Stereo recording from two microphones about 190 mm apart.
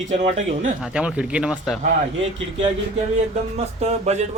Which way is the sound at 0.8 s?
5° right (ahead or behind).